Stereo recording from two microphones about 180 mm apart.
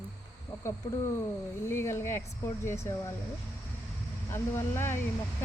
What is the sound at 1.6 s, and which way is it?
Speech, 15° left (ahead or behind).